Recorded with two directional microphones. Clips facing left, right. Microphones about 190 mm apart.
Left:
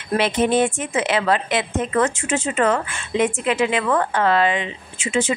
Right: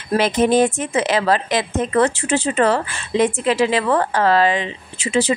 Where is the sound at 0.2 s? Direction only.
40° right (ahead or behind).